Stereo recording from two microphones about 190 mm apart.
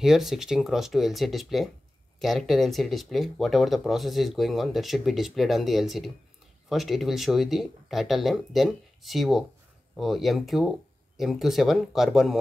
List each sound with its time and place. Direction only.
0.0 s speech: centre (ahead or behind)